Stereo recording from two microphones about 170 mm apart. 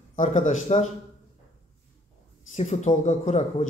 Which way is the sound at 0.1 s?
45° left (ahead or behind).